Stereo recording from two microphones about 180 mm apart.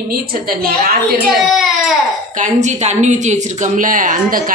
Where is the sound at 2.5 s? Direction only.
40° right (ahead or behind).